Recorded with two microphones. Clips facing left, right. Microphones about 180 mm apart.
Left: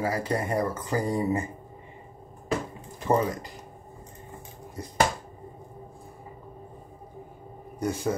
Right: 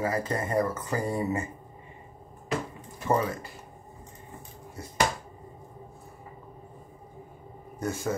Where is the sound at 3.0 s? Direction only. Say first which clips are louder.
Left 2 dB; 15° left (ahead or behind).